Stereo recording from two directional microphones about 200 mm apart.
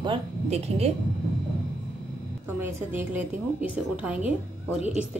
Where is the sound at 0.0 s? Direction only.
30° right (ahead or behind).